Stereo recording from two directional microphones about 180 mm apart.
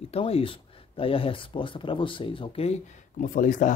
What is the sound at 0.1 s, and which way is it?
Speech, 30° left (ahead or behind).